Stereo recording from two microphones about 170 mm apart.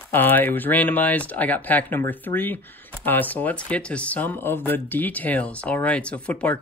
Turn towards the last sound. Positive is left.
turn(degrees=10)  # may be behind; listen again after turning